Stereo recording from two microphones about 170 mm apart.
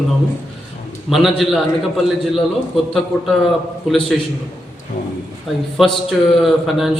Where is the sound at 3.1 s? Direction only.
Centre (ahead or behind).